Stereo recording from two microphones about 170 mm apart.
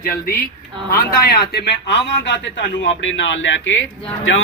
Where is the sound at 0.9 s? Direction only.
60° left (ahead or behind).